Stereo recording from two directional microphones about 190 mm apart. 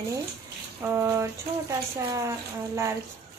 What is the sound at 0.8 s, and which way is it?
Speech, 15° right (ahead or behind).